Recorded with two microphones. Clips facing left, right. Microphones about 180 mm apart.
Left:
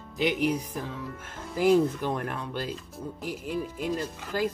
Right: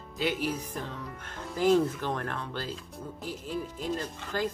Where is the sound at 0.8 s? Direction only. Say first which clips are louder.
Left 3 dB; centre (ahead or behind).